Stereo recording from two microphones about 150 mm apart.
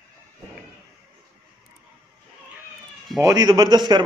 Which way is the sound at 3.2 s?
25° right (ahead or behind).